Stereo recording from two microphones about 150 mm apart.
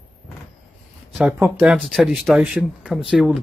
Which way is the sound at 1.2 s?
10° right (ahead or behind).